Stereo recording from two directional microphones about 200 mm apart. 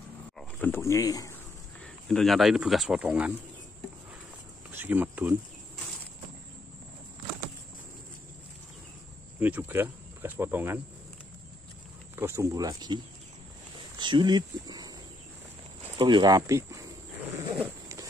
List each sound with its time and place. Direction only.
0.4 s speech: 10° left (ahead or behind)
2.0 s speech: centre (ahead or behind)
4.6 s speech: 10° right (ahead or behind)
9.4 s speech: 10° right (ahead or behind)
12.2 s speech: 15° right (ahead or behind)
17.6 s a sound: 15° right (ahead or behind)